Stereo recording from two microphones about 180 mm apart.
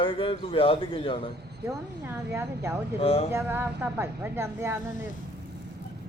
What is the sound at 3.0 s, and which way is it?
Speech, 35° left (ahead or behind).